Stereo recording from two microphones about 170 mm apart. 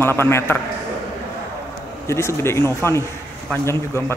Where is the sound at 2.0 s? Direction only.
15° left (ahead or behind).